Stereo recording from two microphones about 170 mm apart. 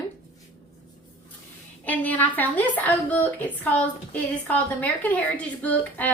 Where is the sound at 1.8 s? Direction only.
10° left (ahead or behind).